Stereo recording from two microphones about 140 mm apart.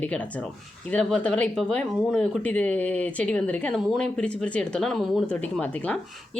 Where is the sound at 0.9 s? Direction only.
10° left (ahead or behind).